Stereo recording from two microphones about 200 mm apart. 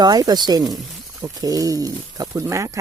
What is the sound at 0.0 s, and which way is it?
Speech, 20° right (ahead or behind).